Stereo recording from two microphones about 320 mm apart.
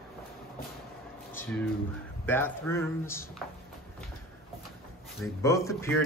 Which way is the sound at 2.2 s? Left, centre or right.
Centre.